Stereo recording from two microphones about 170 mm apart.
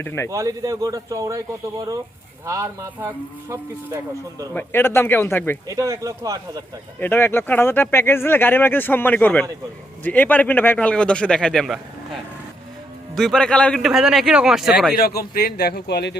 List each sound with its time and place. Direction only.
0.0 s speech: 15° left (ahead or behind)
0.3 s speech: 20° right (ahead or behind)
4.5 s speech: 15° left (ahead or behind)
5.6 s speech: 20° right (ahead or behind)
7.0 s speech: 10° left (ahead or behind)
13.1 s a man's voice: 5° left (ahead or behind)
14.9 s a man's voice: 60° left (ahead or behind); by 16.1 s 80° left